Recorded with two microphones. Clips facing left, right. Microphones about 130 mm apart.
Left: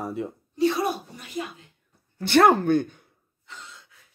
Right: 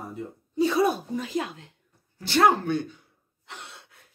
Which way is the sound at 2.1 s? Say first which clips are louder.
Left 3 dB; 60° left (ahead or behind).